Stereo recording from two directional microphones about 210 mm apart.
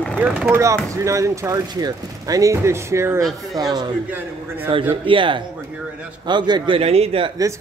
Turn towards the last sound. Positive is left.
turn(degrees=-30)  # may be behind; listen again after turning